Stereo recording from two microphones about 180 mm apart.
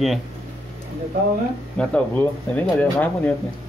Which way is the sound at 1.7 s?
5° left (ahead or behind).